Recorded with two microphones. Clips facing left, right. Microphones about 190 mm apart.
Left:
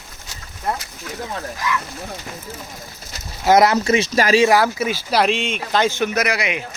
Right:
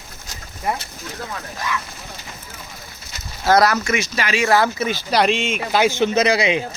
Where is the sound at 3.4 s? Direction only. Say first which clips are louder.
Left 2 dB; 20° left (ahead or behind); by 4.4 s 35° left (ahead or behind).